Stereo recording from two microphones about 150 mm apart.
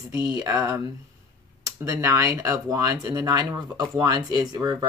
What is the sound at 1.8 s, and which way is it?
Speech, 20° right (ahead or behind).